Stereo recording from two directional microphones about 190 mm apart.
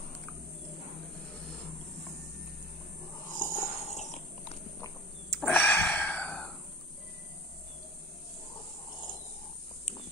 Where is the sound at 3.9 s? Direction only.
35° left (ahead or behind).